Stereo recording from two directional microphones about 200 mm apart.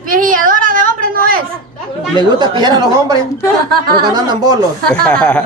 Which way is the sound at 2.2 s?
20° right (ahead or behind).